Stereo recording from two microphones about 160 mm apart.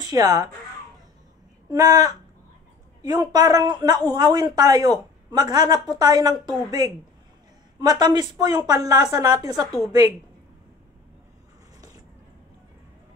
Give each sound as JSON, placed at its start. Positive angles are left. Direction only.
{"t": 0.0, "sound": "speech", "side_deg": -25}
{"t": 1.7, "sound": "a woman's voice", "side_deg": -25}